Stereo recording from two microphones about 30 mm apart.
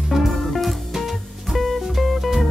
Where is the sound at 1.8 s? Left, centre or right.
Centre.